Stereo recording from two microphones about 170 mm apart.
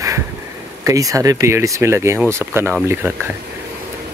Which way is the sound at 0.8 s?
20° right (ahead or behind).